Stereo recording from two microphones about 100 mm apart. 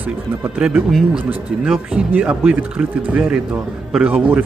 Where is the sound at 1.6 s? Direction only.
5° right (ahead or behind).